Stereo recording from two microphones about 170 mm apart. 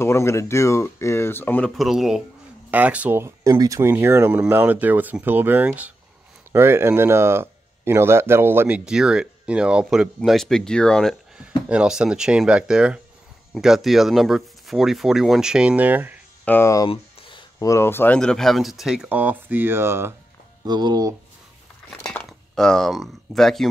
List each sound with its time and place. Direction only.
0.0 s speech: 15° left (ahead or behind)
1.8 s speech: centre (ahead or behind)
16.4 s speech: 15° left (ahead or behind)
16.9 s speech: 30° left (ahead or behind); by 20.2 s 15° right (ahead or behind)
20.6 s speech: 25° right (ahead or behind)
21.9 s speech: 5° left (ahead or behind)